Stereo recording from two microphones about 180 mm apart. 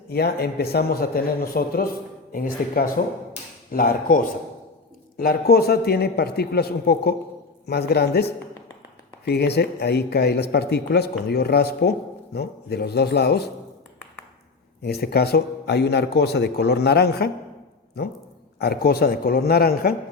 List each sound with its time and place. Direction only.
0.1 s speech: 60° left (ahead or behind)
14.8 s speech: 65° left (ahead or behind)
18.6 s speech: 60° left (ahead or behind)